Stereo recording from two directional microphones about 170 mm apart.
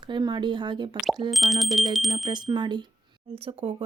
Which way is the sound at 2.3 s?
25° right (ahead or behind).